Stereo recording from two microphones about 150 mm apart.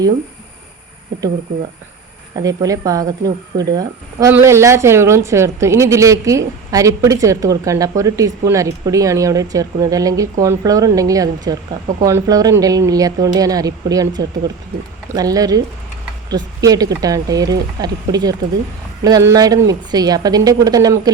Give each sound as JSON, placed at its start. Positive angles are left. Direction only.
{"t": 2.3, "sound": "speech", "side_deg": -25}